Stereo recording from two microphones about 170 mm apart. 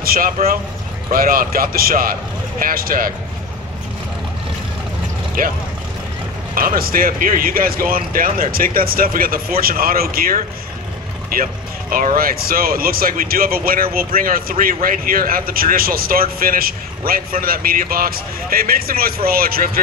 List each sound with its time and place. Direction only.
0.0 s a man's voice: 60° right (ahead or behind)
6.5 s a man's voice: 55° right (ahead or behind)